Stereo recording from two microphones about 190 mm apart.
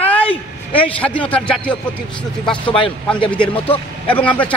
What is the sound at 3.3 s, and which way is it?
Speech, 5° left (ahead or behind).